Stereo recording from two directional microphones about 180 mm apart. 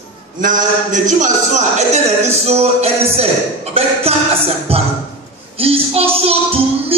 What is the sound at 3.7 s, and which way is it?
Music, 35° right (ahead or behind).